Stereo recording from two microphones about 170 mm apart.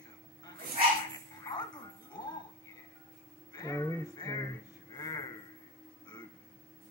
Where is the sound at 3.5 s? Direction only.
20° left (ahead or behind).